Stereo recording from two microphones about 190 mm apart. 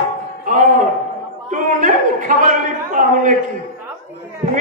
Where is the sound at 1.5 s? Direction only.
40° right (ahead or behind).